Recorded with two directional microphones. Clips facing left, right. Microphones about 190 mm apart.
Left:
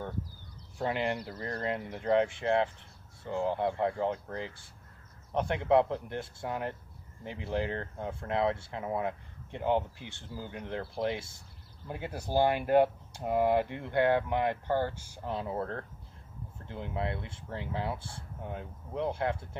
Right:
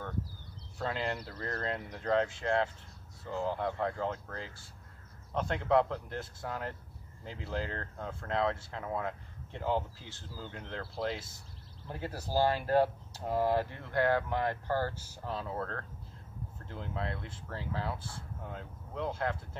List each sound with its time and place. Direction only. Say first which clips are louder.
0.7 s speech: left 4 dB; 15° left (ahead or behind)